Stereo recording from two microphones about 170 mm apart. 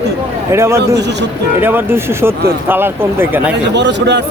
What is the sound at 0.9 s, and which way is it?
Speech, 90° right.